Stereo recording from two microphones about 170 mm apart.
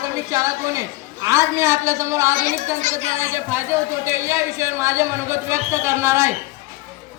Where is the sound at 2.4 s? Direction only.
50° right (ahead or behind).